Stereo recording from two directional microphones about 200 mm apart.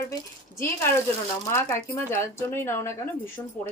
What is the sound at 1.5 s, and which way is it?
A woman's voice, 10° left (ahead or behind).